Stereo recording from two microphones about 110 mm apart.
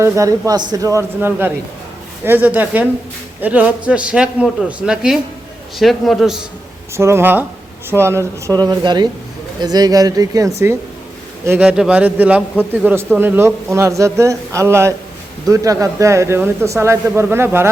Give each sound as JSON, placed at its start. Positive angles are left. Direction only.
{"t": 0.0, "sound": "speech", "side_deg": -30}
{"t": 1.2, "sound": "a man's voice", "side_deg": -20}
{"t": 6.9, "sound": "a man's voice", "side_deg": -25}
{"t": 11.6, "sound": "a man's voice", "side_deg": -10}